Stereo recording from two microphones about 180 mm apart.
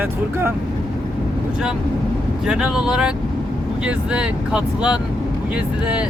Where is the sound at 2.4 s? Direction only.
5° right (ahead or behind).